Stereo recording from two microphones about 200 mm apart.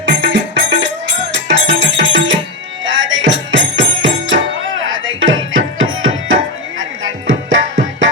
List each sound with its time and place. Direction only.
0.0 s music: 65° right (ahead or behind)
4.9 s tabla: 75° right (ahead or behind)